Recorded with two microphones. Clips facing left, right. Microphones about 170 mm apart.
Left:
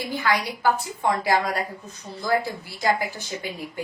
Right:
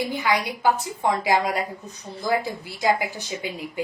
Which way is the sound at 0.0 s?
15° right (ahead or behind).